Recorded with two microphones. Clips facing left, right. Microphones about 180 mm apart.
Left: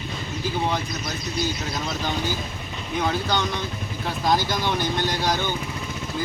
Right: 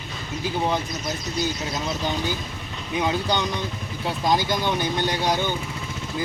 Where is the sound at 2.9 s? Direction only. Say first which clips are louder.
Right 1 dB; 15° right (ahead or behind).